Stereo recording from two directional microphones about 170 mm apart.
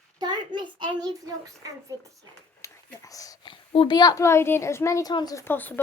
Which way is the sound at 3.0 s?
20° left (ahead or behind).